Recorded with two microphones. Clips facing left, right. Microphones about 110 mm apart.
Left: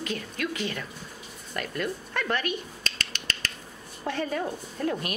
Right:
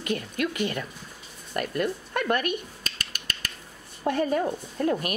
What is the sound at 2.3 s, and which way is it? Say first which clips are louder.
Speech: right 3 dB; 50° right (ahead or behind).